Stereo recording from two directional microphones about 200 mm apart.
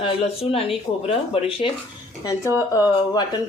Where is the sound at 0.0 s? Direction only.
30° left (ahead or behind).